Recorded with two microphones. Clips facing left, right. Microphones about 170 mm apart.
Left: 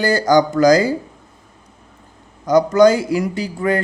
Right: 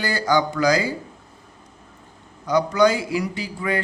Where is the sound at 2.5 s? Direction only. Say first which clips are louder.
Left 6 dB; 45° left (ahead or behind).